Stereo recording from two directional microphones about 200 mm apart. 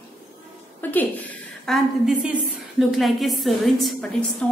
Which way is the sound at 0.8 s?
10° left (ahead or behind).